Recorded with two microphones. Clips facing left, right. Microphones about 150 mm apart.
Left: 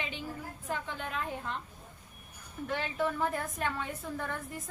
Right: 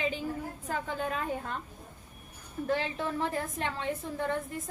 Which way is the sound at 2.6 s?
35° right (ahead or behind).